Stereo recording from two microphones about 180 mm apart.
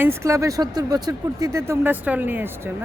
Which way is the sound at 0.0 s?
15° right (ahead or behind).